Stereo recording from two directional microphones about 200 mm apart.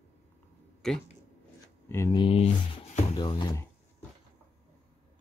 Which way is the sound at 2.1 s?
30° left (ahead or behind).